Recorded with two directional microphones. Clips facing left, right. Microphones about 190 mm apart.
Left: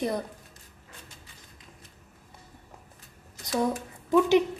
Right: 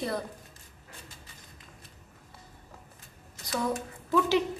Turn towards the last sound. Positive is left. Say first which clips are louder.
# left 5 dB
turn(degrees=20)  # may be behind; listen again after turning